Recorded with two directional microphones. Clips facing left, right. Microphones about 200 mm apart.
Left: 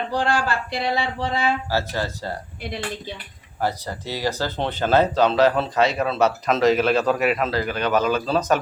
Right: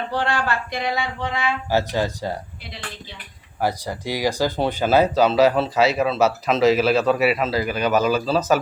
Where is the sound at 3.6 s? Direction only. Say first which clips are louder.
Right 2 dB; 10° right (ahead or behind).